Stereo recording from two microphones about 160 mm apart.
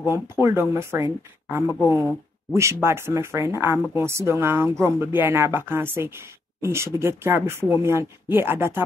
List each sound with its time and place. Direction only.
0.1 s speech: 15° right (ahead or behind)